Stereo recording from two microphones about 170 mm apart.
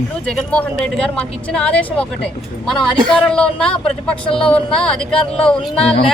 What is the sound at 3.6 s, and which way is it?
Speech, 35° left (ahead or behind).